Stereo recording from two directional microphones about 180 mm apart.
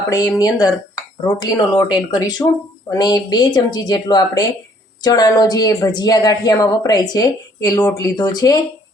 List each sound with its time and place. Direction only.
0.1 s a woman's voice: 20° left (ahead or behind)